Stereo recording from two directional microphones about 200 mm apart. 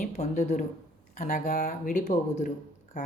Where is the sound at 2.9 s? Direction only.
40° left (ahead or behind).